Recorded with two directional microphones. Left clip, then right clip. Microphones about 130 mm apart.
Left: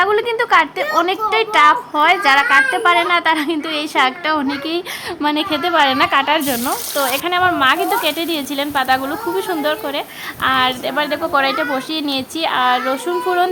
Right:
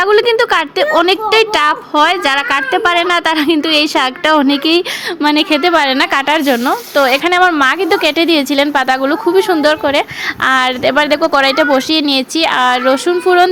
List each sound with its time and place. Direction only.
0.0 s a woman's voice: 30° right (ahead or behind)
4.3 s sizzle: 40° right (ahead or behind)